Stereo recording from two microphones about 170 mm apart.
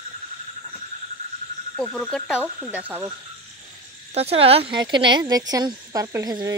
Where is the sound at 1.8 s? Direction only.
5° left (ahead or behind).